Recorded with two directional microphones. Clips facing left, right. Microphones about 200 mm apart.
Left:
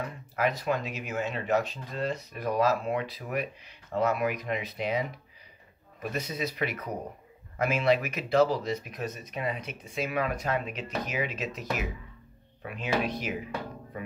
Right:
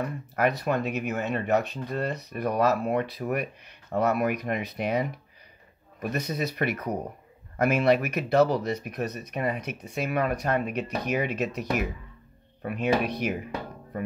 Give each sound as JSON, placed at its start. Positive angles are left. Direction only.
{"t": 0.0, "sound": "speech", "side_deg": -60}
{"t": 6.2, "sound": "speech", "side_deg": -60}
{"t": 12.6, "sound": "speech", "side_deg": -60}